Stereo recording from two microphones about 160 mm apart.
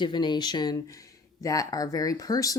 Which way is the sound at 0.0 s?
30° left (ahead or behind).